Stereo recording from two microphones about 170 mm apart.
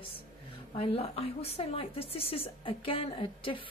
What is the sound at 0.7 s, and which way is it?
A woman's voice, 35° left (ahead or behind).